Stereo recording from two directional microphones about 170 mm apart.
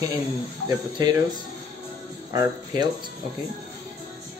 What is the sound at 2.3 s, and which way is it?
Speech, 20° right (ahead or behind).